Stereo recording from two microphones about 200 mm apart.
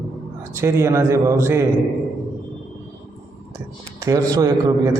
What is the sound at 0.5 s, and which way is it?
A man's voice, 15° right (ahead or behind).